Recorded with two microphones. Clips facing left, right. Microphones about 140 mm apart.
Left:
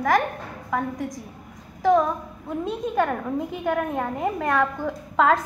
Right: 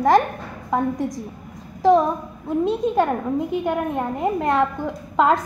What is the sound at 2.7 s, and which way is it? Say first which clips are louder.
A woman's voice: right 2 dB; 20° right (ahead or behind).